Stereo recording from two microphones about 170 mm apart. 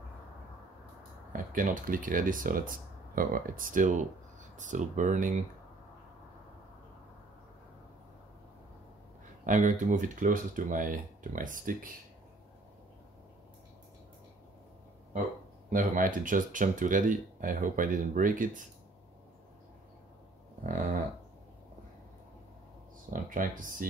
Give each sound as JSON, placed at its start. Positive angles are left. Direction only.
{"t": 1.3, "sound": "speech", "side_deg": -55}
{"t": 9.5, "sound": "speech", "side_deg": -45}
{"t": 15.7, "sound": "speech", "side_deg": -50}
{"t": 23.0, "sound": "speech", "side_deg": -50}